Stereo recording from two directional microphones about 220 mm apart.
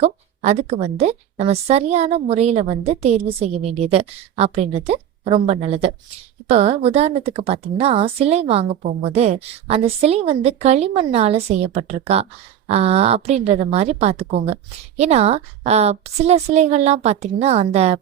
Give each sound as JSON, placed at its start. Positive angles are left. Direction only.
{"t": 0.0, "sound": "a woman's voice", "side_deg": -30}